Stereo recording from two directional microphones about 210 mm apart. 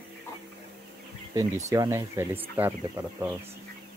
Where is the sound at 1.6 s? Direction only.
15° right (ahead or behind).